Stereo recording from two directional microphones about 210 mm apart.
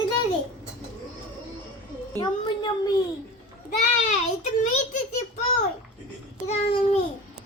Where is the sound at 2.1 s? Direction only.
20° left (ahead or behind).